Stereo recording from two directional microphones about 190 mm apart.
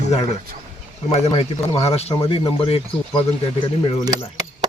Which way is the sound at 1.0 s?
30° left (ahead or behind).